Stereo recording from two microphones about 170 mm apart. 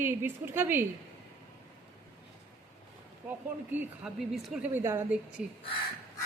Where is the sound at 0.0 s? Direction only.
15° right (ahead or behind).